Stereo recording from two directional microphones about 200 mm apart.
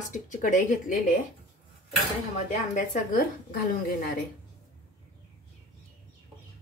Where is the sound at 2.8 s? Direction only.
45° left (ahead or behind).